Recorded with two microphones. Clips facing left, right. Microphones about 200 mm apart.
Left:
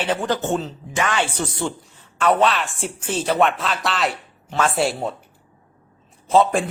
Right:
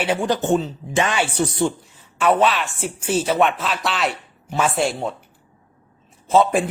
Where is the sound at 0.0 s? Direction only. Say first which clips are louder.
Right 2 dB; 10° right (ahead or behind).